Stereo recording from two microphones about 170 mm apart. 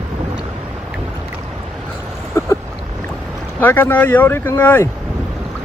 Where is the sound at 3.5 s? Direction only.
10° left (ahead or behind).